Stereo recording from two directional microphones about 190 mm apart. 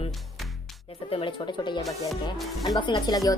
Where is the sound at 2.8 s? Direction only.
20° left (ahead or behind).